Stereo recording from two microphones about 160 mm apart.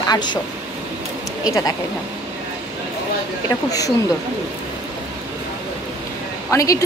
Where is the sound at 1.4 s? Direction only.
20° left (ahead or behind).